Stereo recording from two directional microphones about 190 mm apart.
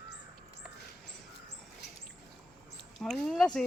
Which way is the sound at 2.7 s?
Centre (ahead or behind).